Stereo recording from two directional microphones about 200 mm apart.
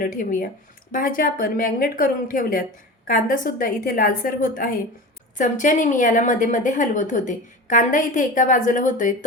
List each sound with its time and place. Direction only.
0.0 s a woman's voice: 45° left (ahead or behind)